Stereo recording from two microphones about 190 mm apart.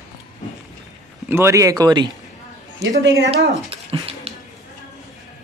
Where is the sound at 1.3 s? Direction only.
15° right (ahead or behind).